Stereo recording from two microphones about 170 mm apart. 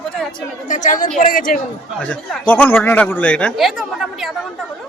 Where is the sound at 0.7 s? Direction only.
45° left (ahead or behind).